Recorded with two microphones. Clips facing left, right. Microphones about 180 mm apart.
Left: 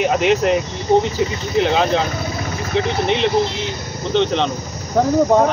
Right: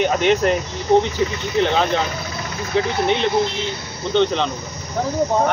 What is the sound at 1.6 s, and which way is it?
Speech, centre (ahead or behind).